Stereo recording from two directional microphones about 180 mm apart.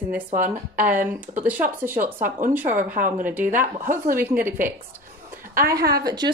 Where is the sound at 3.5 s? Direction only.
50° right (ahead or behind).